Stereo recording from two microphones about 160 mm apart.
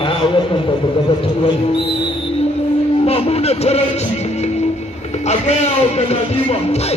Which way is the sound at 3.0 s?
40° left (ahead or behind).